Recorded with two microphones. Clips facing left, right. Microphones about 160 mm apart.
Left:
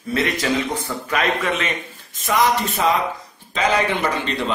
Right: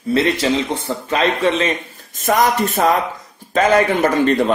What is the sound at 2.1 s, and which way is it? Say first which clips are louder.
Speech: right 3 dB; 45° right (ahead or behind).